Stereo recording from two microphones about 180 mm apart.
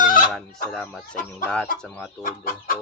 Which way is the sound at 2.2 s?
50° left (ahead or behind).